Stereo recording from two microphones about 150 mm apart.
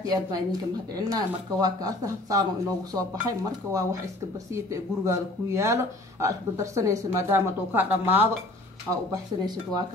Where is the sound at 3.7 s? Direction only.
20° right (ahead or behind).